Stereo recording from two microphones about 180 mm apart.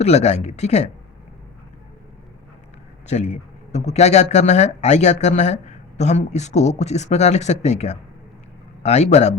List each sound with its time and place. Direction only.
0.0 s speech: 35° left (ahead or behind)
3.1 s a man's voice: 35° left (ahead or behind)